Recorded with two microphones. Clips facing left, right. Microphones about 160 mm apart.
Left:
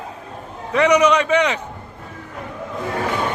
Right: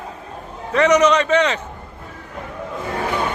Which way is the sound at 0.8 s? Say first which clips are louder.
Even; 10° left (ahead or behind).